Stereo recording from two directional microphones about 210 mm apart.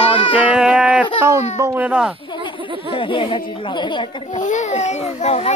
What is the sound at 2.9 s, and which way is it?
Speech, 25° left (ahead or behind).